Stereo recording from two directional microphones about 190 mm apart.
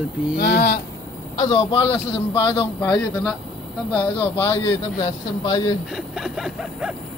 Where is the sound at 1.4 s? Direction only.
25° left (ahead or behind).